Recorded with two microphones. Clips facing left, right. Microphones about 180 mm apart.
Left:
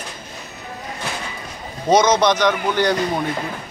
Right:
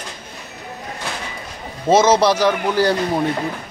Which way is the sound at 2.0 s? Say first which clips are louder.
Right 2 dB; 30° right (ahead or behind).